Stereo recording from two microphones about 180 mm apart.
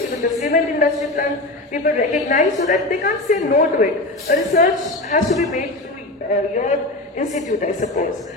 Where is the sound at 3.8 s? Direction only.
45° left (ahead or behind).